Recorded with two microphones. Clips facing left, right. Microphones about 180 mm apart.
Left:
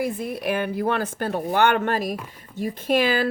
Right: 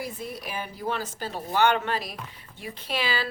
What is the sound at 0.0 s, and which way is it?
A woman's voice, 60° left (ahead or behind).